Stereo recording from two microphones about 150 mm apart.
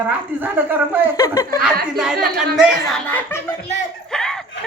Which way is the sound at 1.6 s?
5° right (ahead or behind).